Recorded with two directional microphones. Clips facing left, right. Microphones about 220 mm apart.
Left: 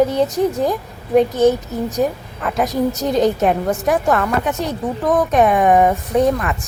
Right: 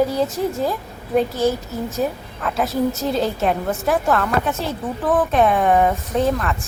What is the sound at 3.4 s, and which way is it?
Speech, centre (ahead or behind).